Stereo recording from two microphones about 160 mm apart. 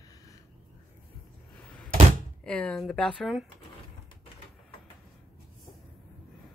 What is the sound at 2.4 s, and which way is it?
Speech, 10° left (ahead or behind).